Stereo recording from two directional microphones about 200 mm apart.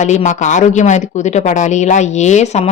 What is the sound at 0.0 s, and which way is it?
Speech, 35° left (ahead or behind).